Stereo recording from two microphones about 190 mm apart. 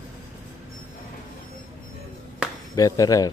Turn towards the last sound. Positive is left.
turn(degrees=20)  # may be behind; listen again after turning